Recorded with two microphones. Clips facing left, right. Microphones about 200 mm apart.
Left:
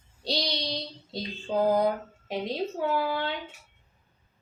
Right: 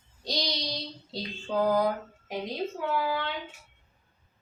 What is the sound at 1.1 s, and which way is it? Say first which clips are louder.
Speech: left 2 dB; 20° left (ahead or behind).